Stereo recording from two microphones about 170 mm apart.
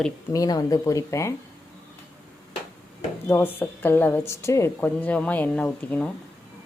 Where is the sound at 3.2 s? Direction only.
10° left (ahead or behind).